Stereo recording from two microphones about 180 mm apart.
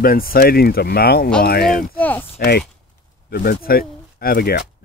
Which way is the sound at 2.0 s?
10° left (ahead or behind).